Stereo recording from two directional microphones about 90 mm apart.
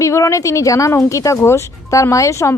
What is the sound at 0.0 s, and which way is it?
Speech, 35° left (ahead or behind).